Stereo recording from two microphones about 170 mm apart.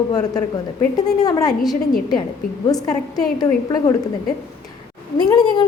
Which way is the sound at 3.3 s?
20° left (ahead or behind).